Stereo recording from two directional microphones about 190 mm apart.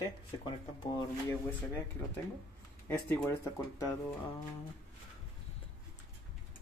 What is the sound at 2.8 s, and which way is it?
Speech, 10° left (ahead or behind).